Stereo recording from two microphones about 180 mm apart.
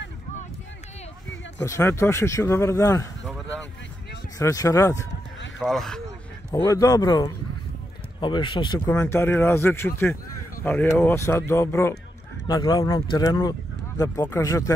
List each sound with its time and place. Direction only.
1.6 s speech: 15° left (ahead or behind)
4.4 s speech: 20° left (ahead or behind)
5.6 s speech: centre (ahead or behind)
6.5 s speech: 20° left (ahead or behind)